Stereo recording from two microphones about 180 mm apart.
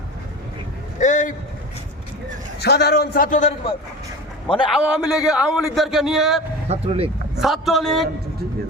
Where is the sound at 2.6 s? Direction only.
65° left (ahead or behind); by 3.5 s 45° left (ahead or behind).